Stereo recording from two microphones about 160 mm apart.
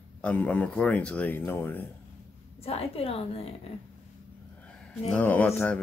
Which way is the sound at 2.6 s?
40° left (ahead or behind).